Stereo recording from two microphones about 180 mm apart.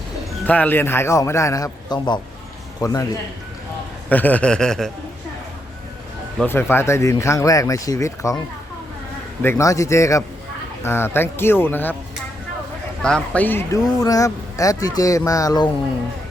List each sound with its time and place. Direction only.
0.4 s speech: 10° left (ahead or behind)
4.1 s speech: 10° left (ahead or behind)
6.4 s speech: 10° left (ahead or behind)
9.4 s speech: 15° left (ahead or behind)
13.0 s speech: 5° left (ahead or behind); by 15.7 s 20° left (ahead or behind)